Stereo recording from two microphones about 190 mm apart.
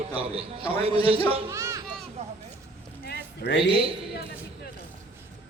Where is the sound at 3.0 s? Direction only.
60° left (ahead or behind).